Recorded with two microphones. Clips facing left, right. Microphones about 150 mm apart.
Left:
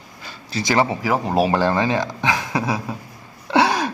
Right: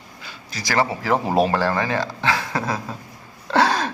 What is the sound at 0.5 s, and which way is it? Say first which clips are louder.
Speech: left 3 dB; 20° left (ahead or behind).